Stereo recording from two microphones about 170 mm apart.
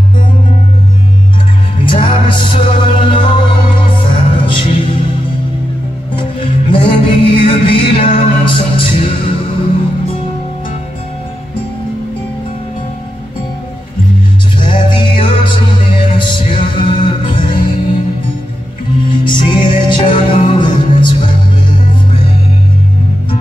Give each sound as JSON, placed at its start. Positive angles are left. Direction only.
{"t": 1.8, "sound": "music", "side_deg": 30}
{"t": 6.1, "sound": "music", "side_deg": 30}
{"t": 14.6, "sound": "music", "side_deg": 30}
{"t": 19.0, "sound": "music", "side_deg": 30}